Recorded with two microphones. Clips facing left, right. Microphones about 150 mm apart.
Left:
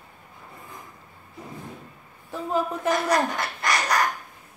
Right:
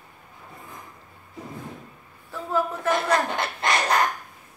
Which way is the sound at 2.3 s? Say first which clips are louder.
Even; 20° left (ahead or behind).